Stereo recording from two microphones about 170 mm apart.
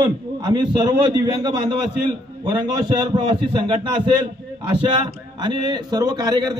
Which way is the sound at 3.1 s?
25° right (ahead or behind).